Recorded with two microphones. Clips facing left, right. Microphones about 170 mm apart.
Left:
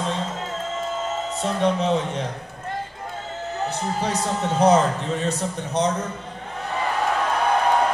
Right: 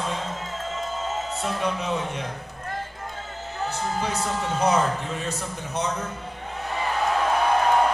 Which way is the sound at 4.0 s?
35° left (ahead or behind).